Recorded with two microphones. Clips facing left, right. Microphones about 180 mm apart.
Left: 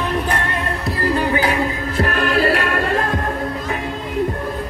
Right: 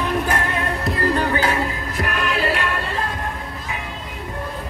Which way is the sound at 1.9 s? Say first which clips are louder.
Left 6 dB; 35° left (ahead or behind).